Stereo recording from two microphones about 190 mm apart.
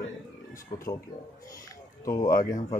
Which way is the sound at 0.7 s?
20° left (ahead or behind).